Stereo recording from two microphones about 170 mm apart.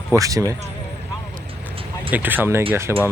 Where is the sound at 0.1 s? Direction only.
20° right (ahead or behind).